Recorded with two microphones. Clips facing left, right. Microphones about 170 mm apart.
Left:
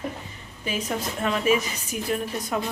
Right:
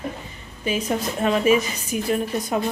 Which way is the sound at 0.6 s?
20° right (ahead or behind).